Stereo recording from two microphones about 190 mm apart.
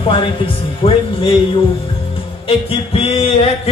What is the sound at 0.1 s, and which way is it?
Speech, 25° left (ahead or behind).